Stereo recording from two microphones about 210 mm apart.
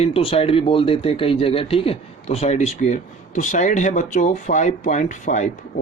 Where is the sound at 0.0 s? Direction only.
25° left (ahead or behind).